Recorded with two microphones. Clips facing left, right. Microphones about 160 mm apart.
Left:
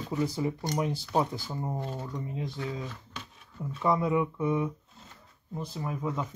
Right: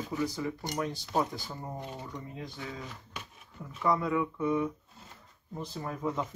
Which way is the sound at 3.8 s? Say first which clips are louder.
Left 2 dB; 20° left (ahead or behind).